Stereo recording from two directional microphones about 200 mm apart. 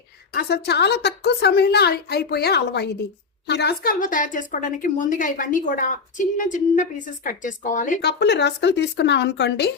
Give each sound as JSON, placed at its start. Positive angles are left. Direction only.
{"t": 0.3, "sound": "a woman's voice", "side_deg": 55}
{"t": 8.0, "sound": "a woman's voice", "side_deg": 55}